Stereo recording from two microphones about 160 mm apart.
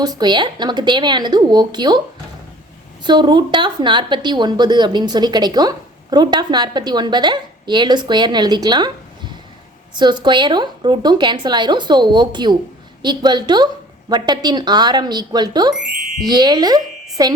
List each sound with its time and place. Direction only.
0.0 s a woman's voice: 25° right (ahead or behind)
3.0 s a woman's voice: 25° right (ahead or behind)
9.9 s a woman's voice: 30° right (ahead or behind)